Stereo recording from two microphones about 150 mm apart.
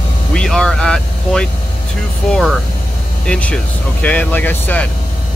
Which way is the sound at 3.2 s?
5° left (ahead or behind).